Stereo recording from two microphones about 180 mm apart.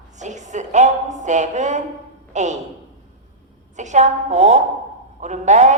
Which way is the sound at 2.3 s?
40° right (ahead or behind).